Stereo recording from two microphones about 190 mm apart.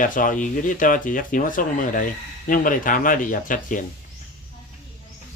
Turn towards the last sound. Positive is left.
turn(degrees=45)  # may be behind; listen again after turning